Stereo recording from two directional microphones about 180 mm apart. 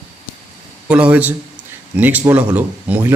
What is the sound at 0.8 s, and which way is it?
Speech, 5° right (ahead or behind).